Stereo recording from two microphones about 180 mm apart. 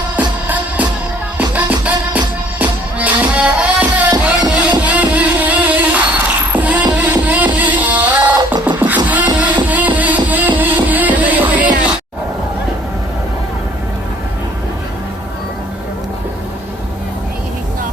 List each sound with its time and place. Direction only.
1.4 s music: 10° right (ahead or behind)